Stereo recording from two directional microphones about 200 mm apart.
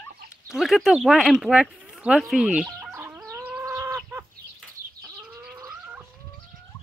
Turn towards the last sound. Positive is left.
turn(degrees=-15)  # may be behind; listen again after turning